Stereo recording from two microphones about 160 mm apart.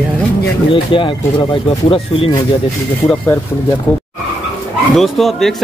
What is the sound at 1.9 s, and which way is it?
Speech, 35° left (ahead or behind).